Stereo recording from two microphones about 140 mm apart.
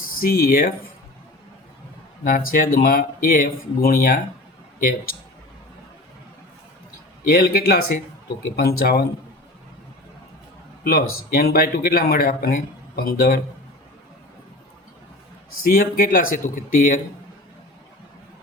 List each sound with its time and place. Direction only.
0.2 s speech: 90° left
2.2 s speech: 85° left
7.3 s speech: 90° left
10.8 s speech: 90° left
15.6 s speech: 90° left